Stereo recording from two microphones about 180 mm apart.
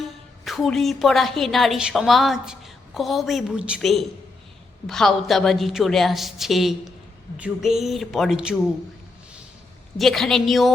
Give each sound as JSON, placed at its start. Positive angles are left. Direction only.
{"t": 0.0, "sound": "a woman's voice", "side_deg": 0}
{"t": 10.0, "sound": "a woman's voice", "side_deg": 0}